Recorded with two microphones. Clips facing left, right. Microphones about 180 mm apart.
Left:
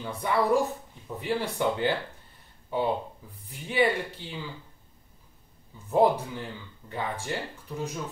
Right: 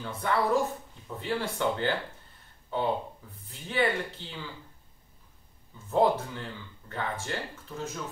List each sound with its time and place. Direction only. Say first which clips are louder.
0.0 s speech: left 2 dB; 15° left (ahead or behind)
3.2 s speech: left 2 dB; 10° left (ahead or behind)
5.9 s speech: left 2 dB; 15° left (ahead or behind)